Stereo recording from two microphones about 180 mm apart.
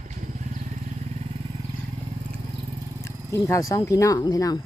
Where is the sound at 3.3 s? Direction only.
15° left (ahead or behind).